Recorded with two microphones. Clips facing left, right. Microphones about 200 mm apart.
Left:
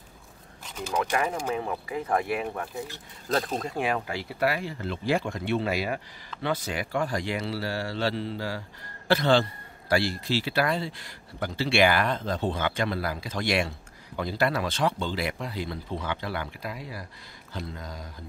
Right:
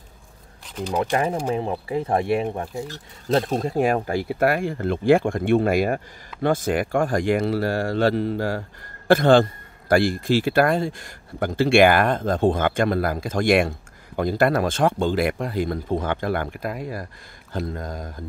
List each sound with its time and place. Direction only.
0.9 s speech: 30° right (ahead or behind); by 18.1 s 50° right (ahead or behind)